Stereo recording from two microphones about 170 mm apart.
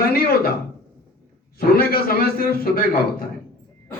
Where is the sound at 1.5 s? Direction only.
60° left (ahead or behind).